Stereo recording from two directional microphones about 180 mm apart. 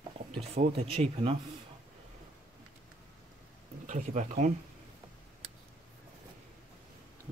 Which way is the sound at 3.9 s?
40° right (ahead or behind).